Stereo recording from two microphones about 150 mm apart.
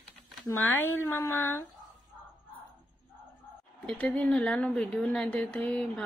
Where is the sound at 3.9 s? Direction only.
10° left (ahead or behind).